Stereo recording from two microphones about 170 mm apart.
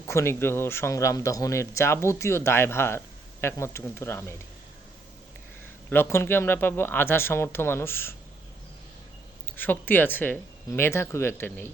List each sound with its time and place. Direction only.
0.0 s speech: 15° left (ahead or behind)
5.9 s speech: 15° left (ahead or behind)
9.5 s speech: 10° left (ahead or behind)